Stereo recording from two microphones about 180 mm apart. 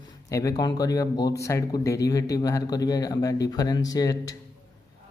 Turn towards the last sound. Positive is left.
turn(degrees=20)  # may be behind; listen again after turning